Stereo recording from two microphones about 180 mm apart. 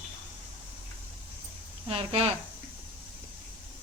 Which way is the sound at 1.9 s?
30° right (ahead or behind).